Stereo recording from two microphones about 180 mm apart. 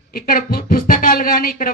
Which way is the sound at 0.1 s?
55° left (ahead or behind).